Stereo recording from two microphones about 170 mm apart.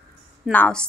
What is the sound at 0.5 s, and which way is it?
Speech, 10° left (ahead or behind).